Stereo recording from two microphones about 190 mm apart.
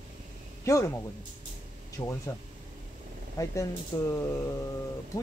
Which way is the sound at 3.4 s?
20° left (ahead or behind).